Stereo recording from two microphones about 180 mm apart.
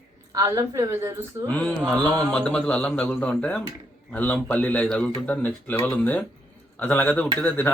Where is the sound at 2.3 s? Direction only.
5° left (ahead or behind).